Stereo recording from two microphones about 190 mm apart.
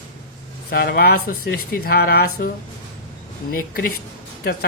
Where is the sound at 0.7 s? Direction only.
55° left (ahead or behind).